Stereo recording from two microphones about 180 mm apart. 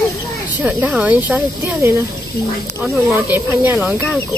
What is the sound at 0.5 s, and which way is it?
Speech, 10° right (ahead or behind).